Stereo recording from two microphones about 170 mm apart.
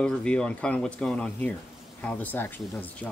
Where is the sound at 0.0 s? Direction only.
5° left (ahead or behind).